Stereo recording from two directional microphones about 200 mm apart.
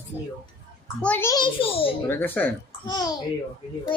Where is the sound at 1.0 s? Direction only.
10° left (ahead or behind); by 1.9 s 25° left (ahead or behind).